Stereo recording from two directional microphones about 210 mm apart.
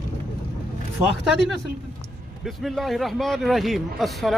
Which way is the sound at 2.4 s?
Centre (ahead or behind).